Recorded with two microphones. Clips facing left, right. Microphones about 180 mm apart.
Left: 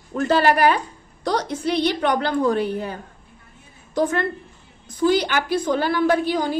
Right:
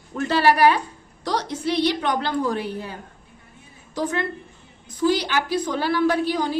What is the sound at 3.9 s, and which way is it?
A woman's voice, 55° left (ahead or behind).